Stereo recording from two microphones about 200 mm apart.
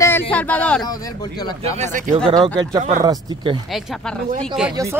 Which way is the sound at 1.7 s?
35° right (ahead or behind).